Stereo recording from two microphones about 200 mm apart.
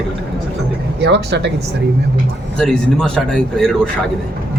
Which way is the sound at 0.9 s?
55° right (ahead or behind).